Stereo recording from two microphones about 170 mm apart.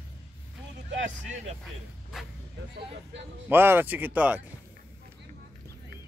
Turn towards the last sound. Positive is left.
turn(degrees=-10)  # may be behind; listen again after turning